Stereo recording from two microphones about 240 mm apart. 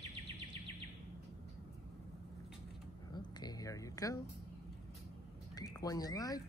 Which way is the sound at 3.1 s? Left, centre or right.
Centre.